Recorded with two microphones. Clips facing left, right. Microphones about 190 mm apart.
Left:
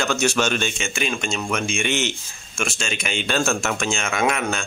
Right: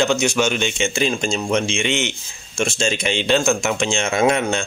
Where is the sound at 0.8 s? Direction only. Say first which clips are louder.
Right 6 dB; 30° right (ahead or behind).